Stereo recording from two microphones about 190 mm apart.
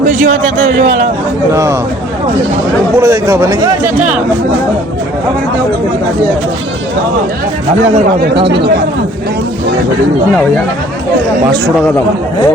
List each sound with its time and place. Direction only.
0.0 s a sound: 40° right (ahead or behind)
3.0 s speech: 15° right (ahead or behind)
8.4 s speech: 60° right (ahead or behind)